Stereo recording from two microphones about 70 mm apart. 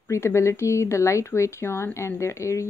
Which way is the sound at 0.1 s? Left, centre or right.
Left.